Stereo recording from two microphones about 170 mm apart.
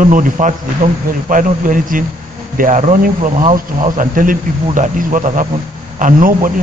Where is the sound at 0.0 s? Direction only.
50° right (ahead or behind).